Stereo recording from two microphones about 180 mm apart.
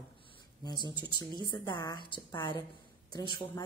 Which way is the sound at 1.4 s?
25° left (ahead or behind).